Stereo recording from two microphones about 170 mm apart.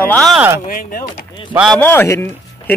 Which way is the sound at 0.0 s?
10° left (ahead or behind).